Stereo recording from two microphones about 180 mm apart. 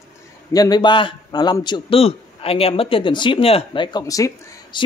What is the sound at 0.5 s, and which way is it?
A man's voice, 20° left (ahead or behind).